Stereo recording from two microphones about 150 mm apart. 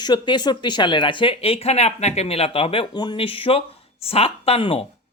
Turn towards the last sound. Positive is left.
turn(degrees=35)  # may be behind; listen again after turning